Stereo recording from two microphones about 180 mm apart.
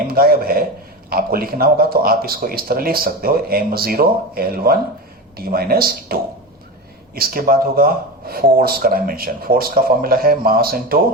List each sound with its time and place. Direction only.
0.1 s speech: 55° right (ahead or behind)
7.2 s speech: 55° right (ahead or behind)